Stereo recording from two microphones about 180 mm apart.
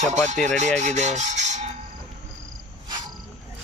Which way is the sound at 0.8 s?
40° right (ahead or behind).